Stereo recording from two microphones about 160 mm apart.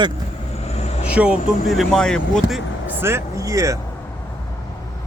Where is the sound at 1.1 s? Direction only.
10° right (ahead or behind).